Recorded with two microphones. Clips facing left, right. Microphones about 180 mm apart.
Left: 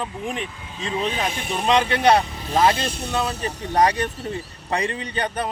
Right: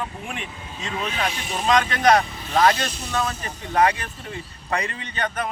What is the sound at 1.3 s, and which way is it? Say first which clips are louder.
Speech: left 2 dB; 55° left (ahead or behind).